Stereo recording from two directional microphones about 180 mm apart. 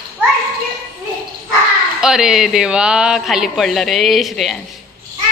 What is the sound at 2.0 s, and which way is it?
Speech, 5° right (ahead or behind).